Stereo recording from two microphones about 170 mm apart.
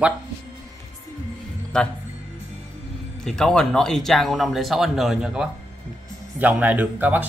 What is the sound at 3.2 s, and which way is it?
Speech, 5° left (ahead or behind).